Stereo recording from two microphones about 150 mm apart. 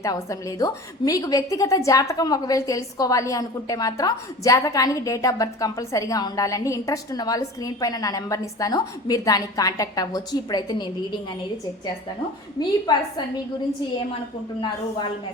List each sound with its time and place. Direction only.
0.0 s a woman's voice: 20° left (ahead or behind)
12.9 s a woman's voice: 25° left (ahead or behind)